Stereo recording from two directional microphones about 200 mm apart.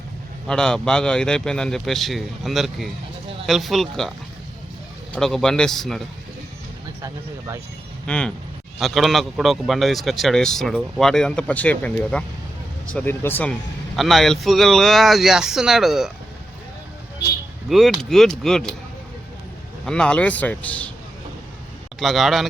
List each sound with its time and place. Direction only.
0.4 s a man's voice: 5° left (ahead or behind)
5.1 s a man's voice: 5° left (ahead or behind)
7.0 s speech: 15° right (ahead or behind)
8.0 s a man's voice: 5° left (ahead or behind)
17.7 s a man's voice: centre (ahead or behind)
19.8 s speech: 5° left (ahead or behind)
22.0 s a man's voice: centre (ahead or behind)